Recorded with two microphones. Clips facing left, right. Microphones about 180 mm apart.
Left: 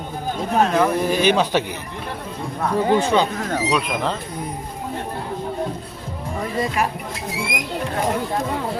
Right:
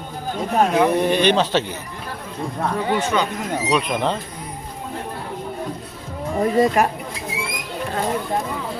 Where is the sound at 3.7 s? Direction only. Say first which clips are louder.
Right 4 dB; centre (ahead or behind).